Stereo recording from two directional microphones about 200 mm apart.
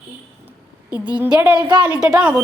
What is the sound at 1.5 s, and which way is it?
Speech, 20° right (ahead or behind).